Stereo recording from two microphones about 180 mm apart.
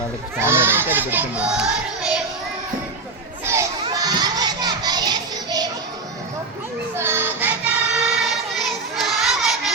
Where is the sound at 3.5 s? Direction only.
20° right (ahead or behind).